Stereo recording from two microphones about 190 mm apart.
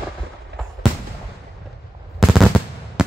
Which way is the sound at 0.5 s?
60° right (ahead or behind).